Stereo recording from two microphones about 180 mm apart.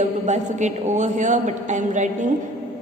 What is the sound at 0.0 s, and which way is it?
A man's voice, 40° right (ahead or behind).